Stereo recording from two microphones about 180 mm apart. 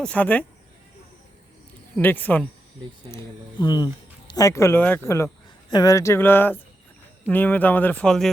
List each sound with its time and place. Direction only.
0.0 s speech: 5° left (ahead or behind)
2.0 s speech: 10° left (ahead or behind)
3.1 s speech: 20° left (ahead or behind); by 8.3 s 5° left (ahead or behind)